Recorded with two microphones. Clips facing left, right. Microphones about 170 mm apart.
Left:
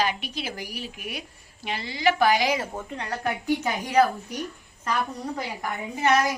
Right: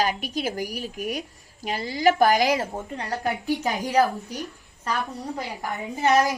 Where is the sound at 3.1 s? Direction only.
20° right (ahead or behind).